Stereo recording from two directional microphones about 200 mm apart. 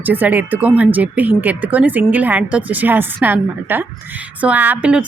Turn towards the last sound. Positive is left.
turn(degrees=-5)  # may be behind; listen again after turning